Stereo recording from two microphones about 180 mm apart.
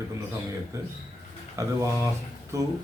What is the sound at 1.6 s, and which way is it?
A man's voice, 15° right (ahead or behind).